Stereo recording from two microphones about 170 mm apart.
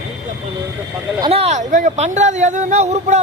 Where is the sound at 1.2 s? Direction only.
35° right (ahead or behind).